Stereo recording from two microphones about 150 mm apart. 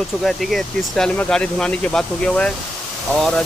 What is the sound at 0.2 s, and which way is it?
Speech, centre (ahead or behind).